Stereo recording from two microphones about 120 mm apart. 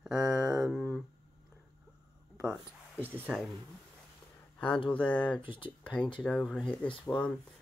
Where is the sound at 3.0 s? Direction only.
15° right (ahead or behind).